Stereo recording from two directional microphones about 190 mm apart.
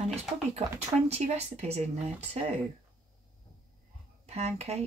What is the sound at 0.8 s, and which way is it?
Speech, 35° right (ahead or behind).